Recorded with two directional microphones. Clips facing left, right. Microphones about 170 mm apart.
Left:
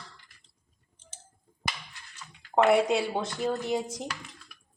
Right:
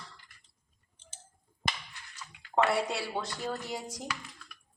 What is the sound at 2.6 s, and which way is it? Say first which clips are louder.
Speech: left 7 dB; 20° left (ahead or behind).